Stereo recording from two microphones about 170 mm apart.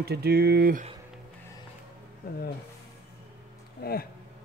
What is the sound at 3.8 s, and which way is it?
Speech, 65° left (ahead or behind).